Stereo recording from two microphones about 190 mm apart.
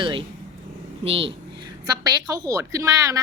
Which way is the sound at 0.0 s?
25° right (ahead or behind).